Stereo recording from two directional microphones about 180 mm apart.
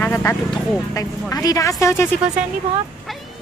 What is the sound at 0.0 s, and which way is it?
Speech, 15° left (ahead or behind).